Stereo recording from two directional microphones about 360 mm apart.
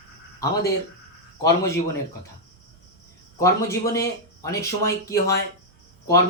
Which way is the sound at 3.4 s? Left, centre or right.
Centre.